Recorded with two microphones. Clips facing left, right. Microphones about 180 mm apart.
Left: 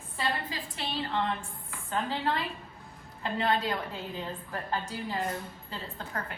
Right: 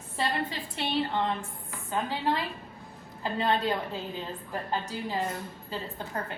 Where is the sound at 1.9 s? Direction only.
20° right (ahead or behind).